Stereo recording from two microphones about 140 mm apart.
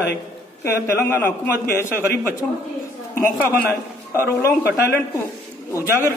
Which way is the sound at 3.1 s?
15° left (ahead or behind).